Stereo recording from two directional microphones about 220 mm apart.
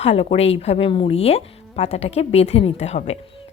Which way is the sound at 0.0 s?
25° left (ahead or behind).